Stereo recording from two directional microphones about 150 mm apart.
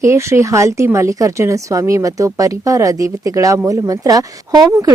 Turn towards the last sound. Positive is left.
turn(degrees=-25)  # may be behind; listen again after turning